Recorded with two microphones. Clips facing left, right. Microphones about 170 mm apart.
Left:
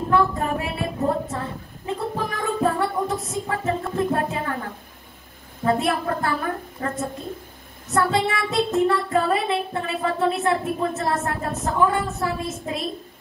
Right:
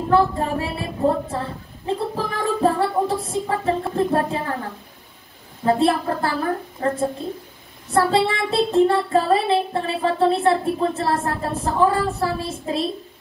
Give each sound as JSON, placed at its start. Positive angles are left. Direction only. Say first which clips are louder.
{"t": 0.1, "sound": "child singing", "louder": "right 3 dB", "side_deg": -30}
{"t": 1.3, "sound": "music", "louder": "right 2 dB", "side_deg": -30}
{"t": 5.7, "sound": "a woman's voice", "louder": "right 3 dB", "side_deg": -30}
{"t": 7.9, "sound": "child singing", "louder": "right 3 dB", "side_deg": -30}